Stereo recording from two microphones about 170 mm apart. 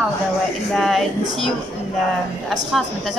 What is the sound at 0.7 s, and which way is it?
Speech, centre (ahead or behind).